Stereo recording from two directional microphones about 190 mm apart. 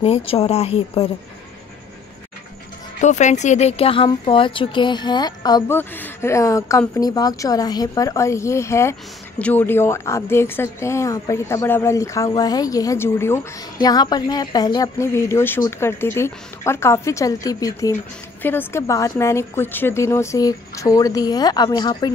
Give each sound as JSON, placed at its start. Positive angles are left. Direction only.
{"t": 0.0, "sound": "speech", "side_deg": 30}
{"t": 3.0, "sound": "speech", "side_deg": 40}